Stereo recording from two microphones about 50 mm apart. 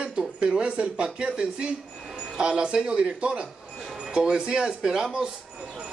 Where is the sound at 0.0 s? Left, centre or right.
Centre.